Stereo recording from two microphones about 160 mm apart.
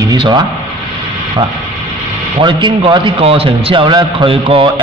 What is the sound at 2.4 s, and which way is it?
A man's voice, 30° right (ahead or behind).